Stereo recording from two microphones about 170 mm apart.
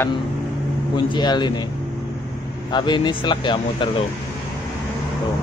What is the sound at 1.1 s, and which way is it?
Speech, 25° left (ahead or behind).